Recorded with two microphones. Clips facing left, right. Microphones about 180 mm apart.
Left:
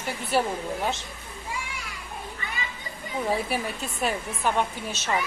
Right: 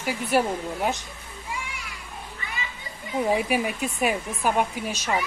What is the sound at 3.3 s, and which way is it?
Speech, 15° right (ahead or behind).